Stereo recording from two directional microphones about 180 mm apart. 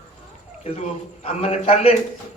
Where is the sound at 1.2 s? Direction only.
35° left (ahead or behind).